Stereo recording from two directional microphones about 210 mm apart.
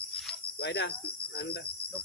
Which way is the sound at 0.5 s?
55° left (ahead or behind).